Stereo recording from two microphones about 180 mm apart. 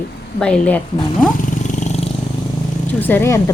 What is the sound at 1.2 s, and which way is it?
Wild animals, 45° left (ahead or behind).